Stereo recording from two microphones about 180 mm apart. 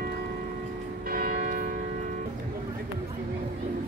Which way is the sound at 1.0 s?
55° right (ahead or behind).